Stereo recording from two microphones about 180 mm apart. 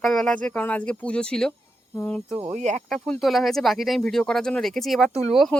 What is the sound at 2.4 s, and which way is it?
Speech, 40° right (ahead or behind).